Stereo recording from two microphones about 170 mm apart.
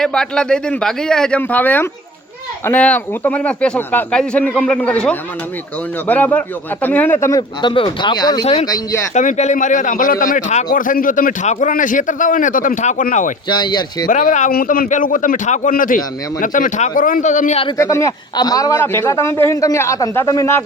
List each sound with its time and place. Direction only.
0.0 s a man's voice: 5° left (ahead or behind); by 9.0 s 20° left (ahead or behind)
9.1 s a man's voice: 45° left (ahead or behind)
13.5 s speech: 25° left (ahead or behind)
14.1 s a man's voice: 50° left (ahead or behind)
17.7 s a man's voice: 15° left (ahead or behind)